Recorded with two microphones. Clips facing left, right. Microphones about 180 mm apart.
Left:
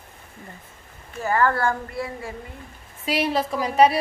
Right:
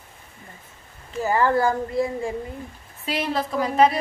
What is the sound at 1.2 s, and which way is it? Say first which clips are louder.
Speech: right 2 dB; 15° right (ahead or behind).